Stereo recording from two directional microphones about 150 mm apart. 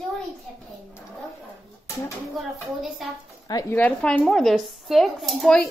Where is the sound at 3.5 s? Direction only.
25° left (ahead or behind).